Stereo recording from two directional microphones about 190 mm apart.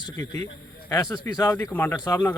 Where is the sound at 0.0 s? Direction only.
15° left (ahead or behind).